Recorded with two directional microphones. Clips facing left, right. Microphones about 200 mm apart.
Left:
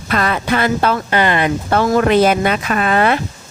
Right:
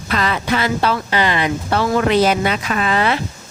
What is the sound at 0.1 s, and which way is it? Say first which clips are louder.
Speech: left 2 dB; 50° left (ahead or behind).